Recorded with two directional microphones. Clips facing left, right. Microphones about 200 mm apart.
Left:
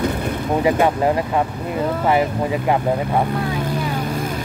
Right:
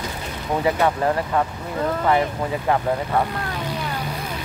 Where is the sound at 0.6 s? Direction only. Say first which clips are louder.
Left 3 dB; 15° left (ahead or behind).